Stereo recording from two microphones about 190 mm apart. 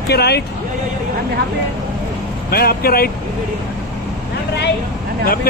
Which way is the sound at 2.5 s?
55° left (ahead or behind).